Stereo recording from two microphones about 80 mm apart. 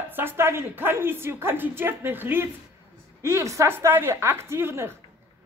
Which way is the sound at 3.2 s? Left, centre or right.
Right.